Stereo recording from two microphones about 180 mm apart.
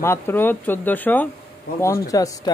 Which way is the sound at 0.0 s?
10° left (ahead or behind).